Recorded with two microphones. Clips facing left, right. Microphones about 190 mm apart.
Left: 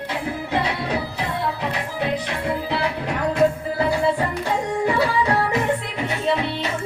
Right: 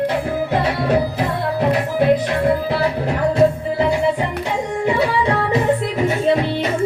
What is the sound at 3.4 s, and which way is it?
Music, 20° right (ahead or behind).